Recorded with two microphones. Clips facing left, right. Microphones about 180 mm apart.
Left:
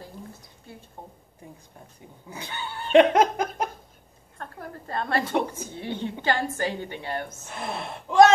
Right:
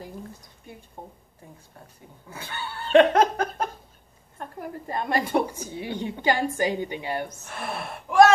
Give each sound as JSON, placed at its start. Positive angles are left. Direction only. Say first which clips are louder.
{"t": 2.2, "sound": "laughter", "louder": "even", "side_deg": 15}
{"t": 4.4, "sound": "a woman's voice", "louder": "right 3 dB", "side_deg": -15}
{"t": 7.4, "sound": "speech", "louder": "even", "side_deg": 20}